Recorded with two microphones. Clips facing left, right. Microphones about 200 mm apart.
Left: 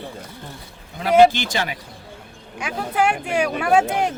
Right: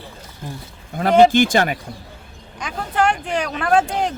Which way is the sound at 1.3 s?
50° right (ahead or behind).